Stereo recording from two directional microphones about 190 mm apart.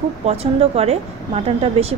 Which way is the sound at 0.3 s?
35° right (ahead or behind).